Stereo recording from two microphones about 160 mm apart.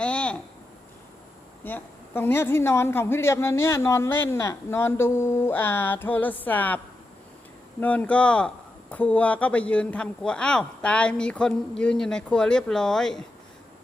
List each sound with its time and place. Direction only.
0.0 s a sound: 5° left (ahead or behind)
1.6 s a woman's voice: 10° left (ahead or behind)
7.8 s a woman's voice: 10° left (ahead or behind)